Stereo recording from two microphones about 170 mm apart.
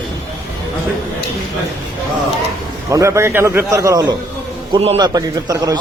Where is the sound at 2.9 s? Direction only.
20° right (ahead or behind).